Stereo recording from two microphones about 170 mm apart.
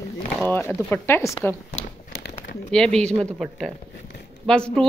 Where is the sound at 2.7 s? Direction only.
5° left (ahead or behind).